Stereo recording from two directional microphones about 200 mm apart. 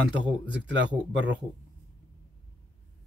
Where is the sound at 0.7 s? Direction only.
65° right (ahead or behind).